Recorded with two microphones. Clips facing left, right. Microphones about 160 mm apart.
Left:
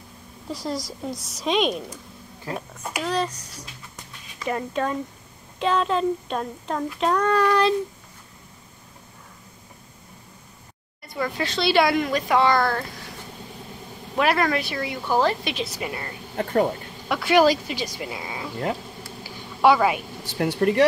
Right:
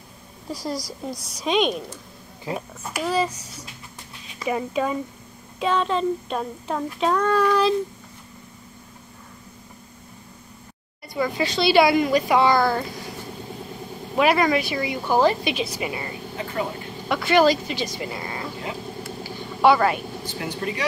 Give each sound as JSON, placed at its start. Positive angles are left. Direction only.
{"t": 0.5, "sound": "speech", "side_deg": 0}
{"t": 3.0, "sound": "speech", "side_deg": -5}
{"t": 4.5, "sound": "speech", "side_deg": -5}
{"t": 11.1, "sound": "speech", "side_deg": -5}
{"t": 14.1, "sound": "speech", "side_deg": 0}
{"t": 16.4, "sound": "vehicle", "side_deg": 55}
{"t": 17.1, "sound": "speech", "side_deg": 5}
{"t": 19.2, "sound": "vehicle", "side_deg": 5}
{"t": 20.3, "sound": "speech", "side_deg": 60}